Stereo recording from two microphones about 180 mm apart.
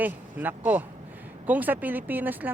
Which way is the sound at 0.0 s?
10° right (ahead or behind).